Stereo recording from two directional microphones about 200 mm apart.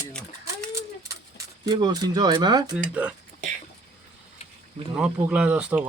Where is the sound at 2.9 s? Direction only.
5° right (ahead or behind).